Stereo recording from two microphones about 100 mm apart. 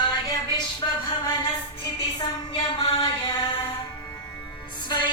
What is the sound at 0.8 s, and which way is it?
Music, 40° left (ahead or behind).